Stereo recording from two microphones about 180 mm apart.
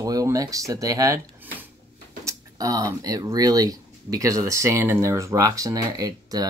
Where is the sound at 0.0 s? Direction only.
20° right (ahead or behind).